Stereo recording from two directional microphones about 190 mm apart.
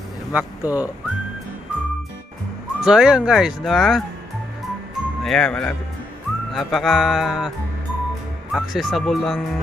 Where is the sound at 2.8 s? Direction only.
5° right (ahead or behind).